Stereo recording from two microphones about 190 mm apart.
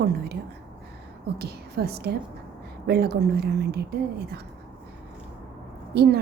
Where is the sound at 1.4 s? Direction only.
55° right (ahead or behind).